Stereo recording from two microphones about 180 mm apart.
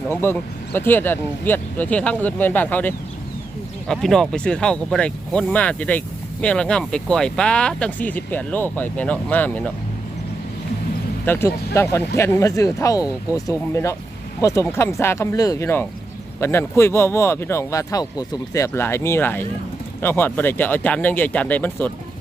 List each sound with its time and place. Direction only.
0.1 s speech: 10° left (ahead or behind)
11.3 s speech: 15° left (ahead or behind)